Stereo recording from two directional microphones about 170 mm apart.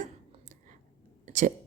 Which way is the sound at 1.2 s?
50° right (ahead or behind).